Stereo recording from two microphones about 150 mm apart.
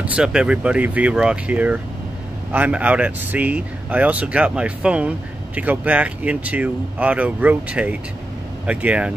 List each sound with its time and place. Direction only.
0.0 s speech: 5° right (ahead or behind)